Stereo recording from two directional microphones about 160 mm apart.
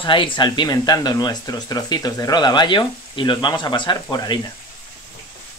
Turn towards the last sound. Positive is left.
turn(degrees=25)  # may be behind; listen again after turning